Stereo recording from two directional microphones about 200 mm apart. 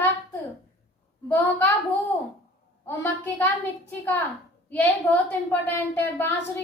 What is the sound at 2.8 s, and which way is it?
A woman's voice, 10° left (ahead or behind).